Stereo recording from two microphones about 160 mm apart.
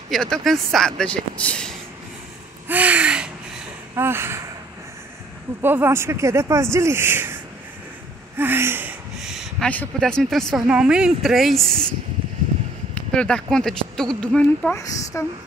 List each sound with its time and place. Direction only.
0.1 s speech: 5° left (ahead or behind)
2.7 s gasp: 10° right (ahead or behind)
3.9 s speech: 15° right (ahead or behind)
5.6 s speech: 15° right (ahead or behind)
8.4 s gasp: 15° right (ahead or behind)
9.6 s speech: 5° left (ahead or behind)
12.9 s speech: 5° left (ahead or behind)
14.8 s speech: 20° left (ahead or behind)